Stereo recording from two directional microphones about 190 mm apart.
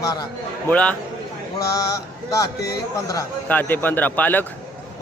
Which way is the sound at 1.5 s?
20° left (ahead or behind).